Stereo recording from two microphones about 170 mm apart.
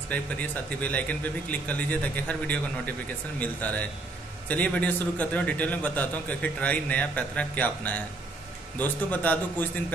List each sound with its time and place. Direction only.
0.1 s a man's voice: 10° left (ahead or behind)